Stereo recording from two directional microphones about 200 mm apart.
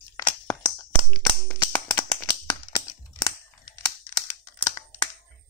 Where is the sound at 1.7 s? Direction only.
20° left (ahead or behind).